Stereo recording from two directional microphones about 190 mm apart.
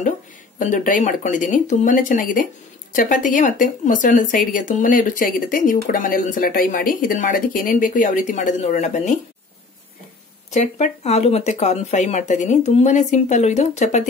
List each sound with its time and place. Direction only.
0.6 s speech: 45° left (ahead or behind)
10.5 s speech: 35° left (ahead or behind)